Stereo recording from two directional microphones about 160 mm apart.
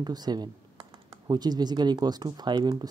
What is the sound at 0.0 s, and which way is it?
Speech, 25° right (ahead or behind).